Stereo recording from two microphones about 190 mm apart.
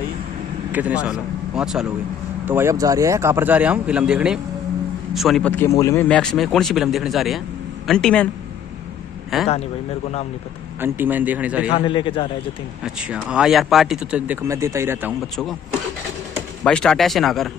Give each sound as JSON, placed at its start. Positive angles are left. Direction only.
{"t": 0.7, "sound": "a man's voice", "side_deg": -10}
{"t": 5.6, "sound": "a man's voice", "side_deg": 15}
{"t": 9.3, "sound": "a man's voice", "side_deg": 0}
{"t": 10.8, "sound": "speech", "side_deg": -10}
{"t": 11.7, "sound": "a man's voice", "side_deg": 25}
{"t": 12.8, "sound": "a man's voice", "side_deg": -5}
{"t": 16.6, "sound": "a man's voice", "side_deg": 5}